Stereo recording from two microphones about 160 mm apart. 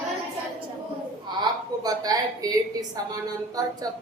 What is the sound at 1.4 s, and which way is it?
A woman's voice, 25° right (ahead or behind).